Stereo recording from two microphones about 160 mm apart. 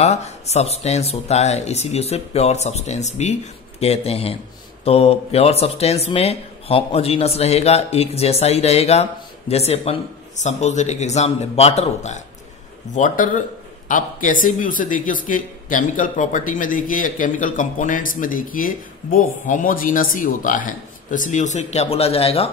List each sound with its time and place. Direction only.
0.0 s speech: 45° left (ahead or behind)
12.9 s speech: 55° left (ahead or behind); by 22.5 s 40° left (ahead or behind)